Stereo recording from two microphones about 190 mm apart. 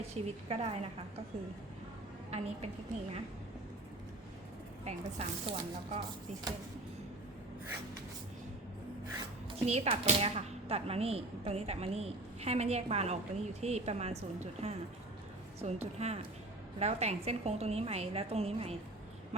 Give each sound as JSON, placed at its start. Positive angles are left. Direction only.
{"t": 0.1, "sound": "speech", "side_deg": -35}
{"t": 4.9, "sound": "speech", "side_deg": -35}
{"t": 9.5, "sound": "speech", "side_deg": -35}